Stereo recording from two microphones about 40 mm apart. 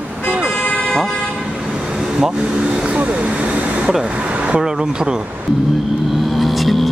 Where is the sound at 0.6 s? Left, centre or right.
Left.